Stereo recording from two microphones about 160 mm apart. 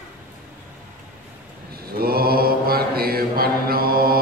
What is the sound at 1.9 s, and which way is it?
Mantra, 70° right (ahead or behind).